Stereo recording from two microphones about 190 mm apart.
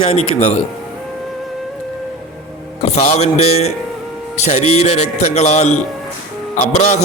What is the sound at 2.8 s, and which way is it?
A man's voice, 35° left (ahead or behind).